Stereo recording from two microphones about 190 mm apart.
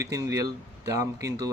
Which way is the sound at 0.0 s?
15° right (ahead or behind).